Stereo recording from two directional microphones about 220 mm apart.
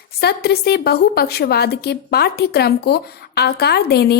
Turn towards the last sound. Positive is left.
turn(degrees=45)  # may be behind; listen again after turning